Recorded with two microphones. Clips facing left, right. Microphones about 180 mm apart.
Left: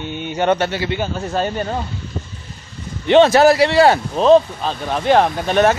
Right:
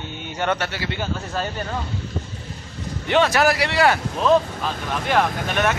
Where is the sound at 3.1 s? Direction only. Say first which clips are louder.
Left 8 dB; 25° left (ahead or behind).